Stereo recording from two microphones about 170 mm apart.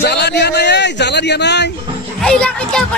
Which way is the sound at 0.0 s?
75° left (ahead or behind).